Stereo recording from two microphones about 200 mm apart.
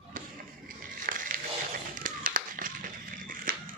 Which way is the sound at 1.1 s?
45° right (ahead or behind).